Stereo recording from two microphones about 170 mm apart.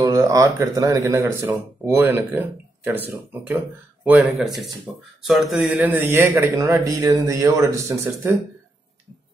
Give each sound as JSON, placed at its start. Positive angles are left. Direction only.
{"t": 0.0, "sound": "speech", "side_deg": -20}
{"t": 5.7, "sound": "speech", "side_deg": -15}